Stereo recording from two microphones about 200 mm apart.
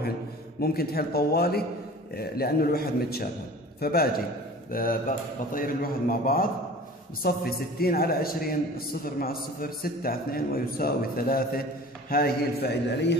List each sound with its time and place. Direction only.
0.6 s a man's voice: 50° left (ahead or behind)